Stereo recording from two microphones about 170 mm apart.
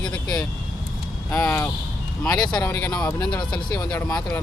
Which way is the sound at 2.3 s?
25° left (ahead or behind).